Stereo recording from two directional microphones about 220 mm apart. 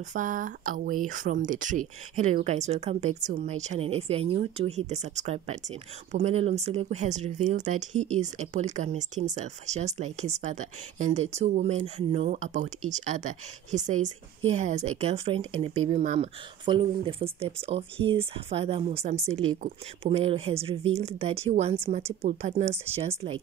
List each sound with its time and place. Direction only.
0.1 s speech: 35° right (ahead or behind)